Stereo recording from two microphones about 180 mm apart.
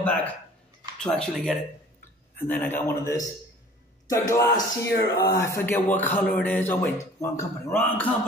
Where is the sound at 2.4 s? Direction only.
10° left (ahead or behind).